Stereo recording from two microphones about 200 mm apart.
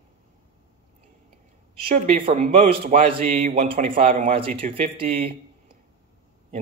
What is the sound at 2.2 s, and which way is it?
Speech, 35° right (ahead or behind).